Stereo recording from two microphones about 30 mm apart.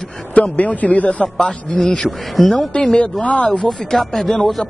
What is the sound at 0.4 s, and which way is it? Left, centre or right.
Speech, left.